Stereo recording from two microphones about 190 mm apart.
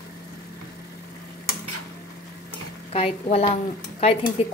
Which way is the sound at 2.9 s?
30° left (ahead or behind).